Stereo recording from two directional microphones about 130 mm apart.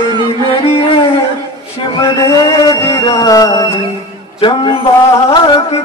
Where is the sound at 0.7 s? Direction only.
45° left (ahead or behind).